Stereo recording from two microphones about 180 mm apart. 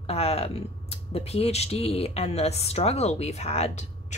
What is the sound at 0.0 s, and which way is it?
Speech, 35° left (ahead or behind).